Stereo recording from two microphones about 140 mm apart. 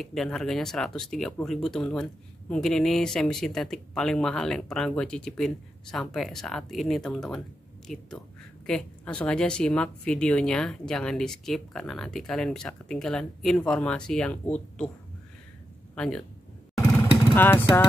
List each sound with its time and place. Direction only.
0.0 s a woman's voice: 5° left (ahead or behind)
15.9 s speech: 5° left (ahead or behind)
17.4 s speech: 15° left (ahead or behind)